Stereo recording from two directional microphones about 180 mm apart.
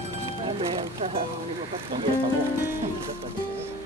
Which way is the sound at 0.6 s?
30° right (ahead or behind).